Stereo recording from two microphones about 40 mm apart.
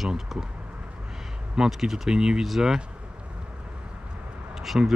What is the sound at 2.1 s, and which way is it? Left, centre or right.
Speech, centre.